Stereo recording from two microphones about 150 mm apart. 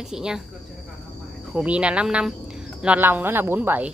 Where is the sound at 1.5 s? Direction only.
10° right (ahead or behind).